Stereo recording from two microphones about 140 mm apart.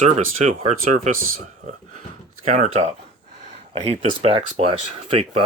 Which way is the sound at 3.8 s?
40° right (ahead or behind).